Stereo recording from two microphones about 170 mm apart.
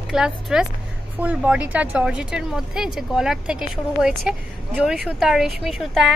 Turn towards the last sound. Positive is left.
turn(degrees=0)  # may be behind; listen again after turning